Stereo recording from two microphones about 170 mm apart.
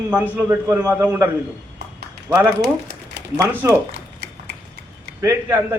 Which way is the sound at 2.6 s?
75° right (ahead or behind).